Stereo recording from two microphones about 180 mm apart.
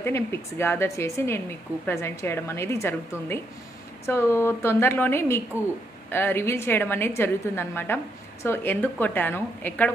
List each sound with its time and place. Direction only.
0.0 s a woman's voice: 15° left (ahead or behind)